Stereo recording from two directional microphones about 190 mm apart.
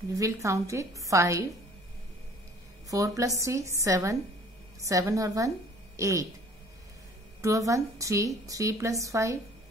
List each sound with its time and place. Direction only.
0.1 s a woman's voice: 15° right (ahead or behind)
2.9 s a woman's voice: 15° right (ahead or behind)
7.4 s a woman's voice: 15° right (ahead or behind)